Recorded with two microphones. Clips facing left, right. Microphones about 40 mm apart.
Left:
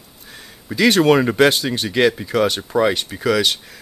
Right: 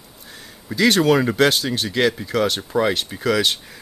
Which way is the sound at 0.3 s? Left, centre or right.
Centre.